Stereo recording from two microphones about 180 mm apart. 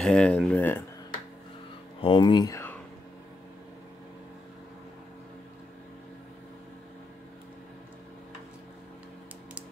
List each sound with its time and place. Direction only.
0.0 s speech: 5° left (ahead or behind)
2.0 s speech: 30° left (ahead or behind)